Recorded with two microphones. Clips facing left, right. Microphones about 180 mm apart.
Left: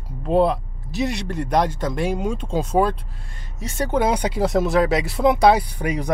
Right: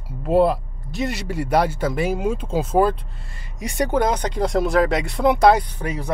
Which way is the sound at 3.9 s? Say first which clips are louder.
Left 2 dB; 10° left (ahead or behind).